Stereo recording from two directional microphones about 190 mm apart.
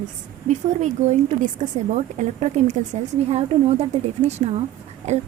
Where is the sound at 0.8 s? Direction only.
40° right (ahead or behind).